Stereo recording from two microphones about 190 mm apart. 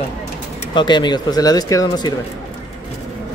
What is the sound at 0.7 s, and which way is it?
Speech, 25° left (ahead or behind).